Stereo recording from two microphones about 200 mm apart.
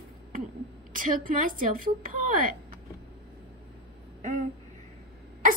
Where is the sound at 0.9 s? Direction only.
45° right (ahead or behind).